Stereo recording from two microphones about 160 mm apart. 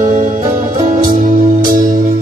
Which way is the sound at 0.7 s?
30° right (ahead or behind).